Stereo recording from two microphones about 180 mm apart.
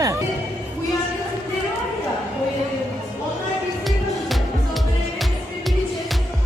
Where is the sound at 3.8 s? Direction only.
Centre (ahead or behind).